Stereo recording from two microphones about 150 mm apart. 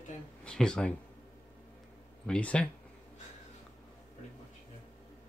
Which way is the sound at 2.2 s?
5° left (ahead or behind).